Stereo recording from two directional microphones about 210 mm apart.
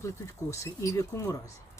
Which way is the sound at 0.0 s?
15° left (ahead or behind).